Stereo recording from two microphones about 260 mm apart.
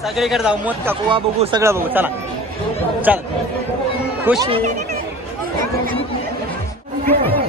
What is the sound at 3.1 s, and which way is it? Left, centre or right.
Speech, centre.